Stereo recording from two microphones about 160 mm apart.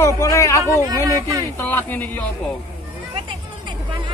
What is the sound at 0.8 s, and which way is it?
Speech, 20° right (ahead or behind).